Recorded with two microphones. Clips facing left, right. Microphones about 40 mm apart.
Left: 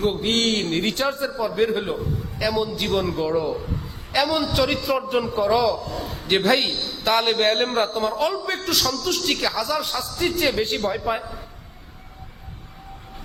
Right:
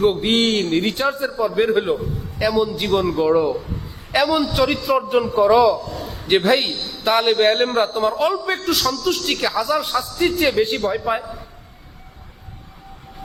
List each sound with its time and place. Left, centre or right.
0.0 s a man's voice: right
0.4 s a man's voice: centre
4.2 s a man's voice: centre